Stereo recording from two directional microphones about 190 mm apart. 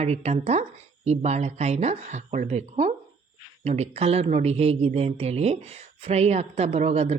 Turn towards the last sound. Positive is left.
turn(degrees=-35)  # may be behind; listen again after turning